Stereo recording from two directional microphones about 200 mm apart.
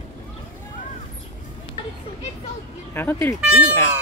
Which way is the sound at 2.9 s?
10° left (ahead or behind).